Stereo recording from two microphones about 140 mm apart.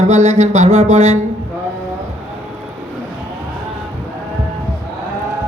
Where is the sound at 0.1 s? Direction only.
50° right (ahead or behind).